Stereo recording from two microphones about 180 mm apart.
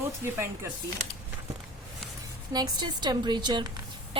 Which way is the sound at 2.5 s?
25° right (ahead or behind).